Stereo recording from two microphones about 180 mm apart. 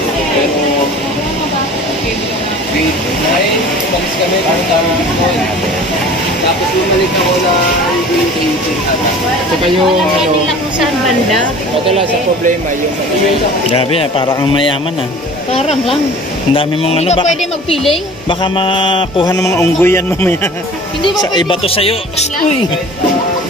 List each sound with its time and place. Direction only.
13.7 s mantra: 30° left (ahead or behind)
16.5 s speech: 35° left (ahead or behind)
18.4 s mantra: 30° left (ahead or behind)
19.4 s speech: 15° left (ahead or behind)
21.0 s speech: 30° left (ahead or behind)